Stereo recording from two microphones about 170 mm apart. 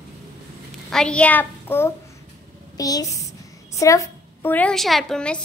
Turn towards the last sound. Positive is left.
turn(degrees=5)  # may be behind; listen again after turning